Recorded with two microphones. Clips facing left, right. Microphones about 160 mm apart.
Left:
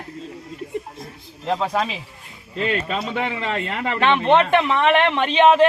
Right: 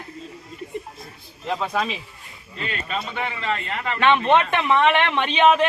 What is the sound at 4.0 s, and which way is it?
Speech, 30° left (ahead or behind).